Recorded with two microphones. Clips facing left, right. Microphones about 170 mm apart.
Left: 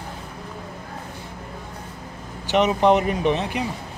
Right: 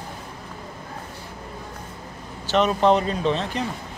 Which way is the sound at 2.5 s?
15° left (ahead or behind).